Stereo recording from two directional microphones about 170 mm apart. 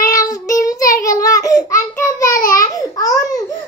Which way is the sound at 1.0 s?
20° left (ahead or behind).